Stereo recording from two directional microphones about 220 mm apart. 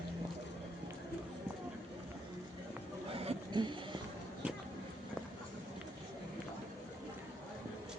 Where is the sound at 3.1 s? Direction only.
25° right (ahead or behind).